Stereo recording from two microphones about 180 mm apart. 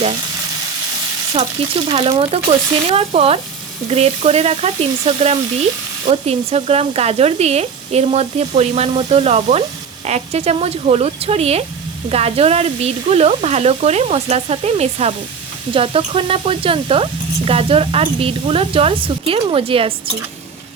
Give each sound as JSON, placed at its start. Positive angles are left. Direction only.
{"t": 1.3, "sound": "speech", "side_deg": -30}